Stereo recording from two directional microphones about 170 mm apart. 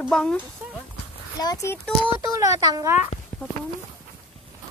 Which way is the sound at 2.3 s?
20° right (ahead or behind).